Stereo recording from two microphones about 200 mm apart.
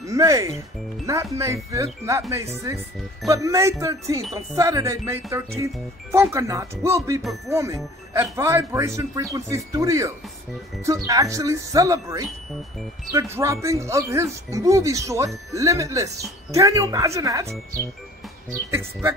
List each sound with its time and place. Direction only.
0.0 s speech: 15° right (ahead or behind)
3.3 s speech: 15° right (ahead or behind)